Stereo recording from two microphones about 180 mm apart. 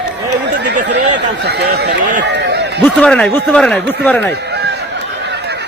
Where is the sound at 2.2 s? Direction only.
70° right (ahead or behind).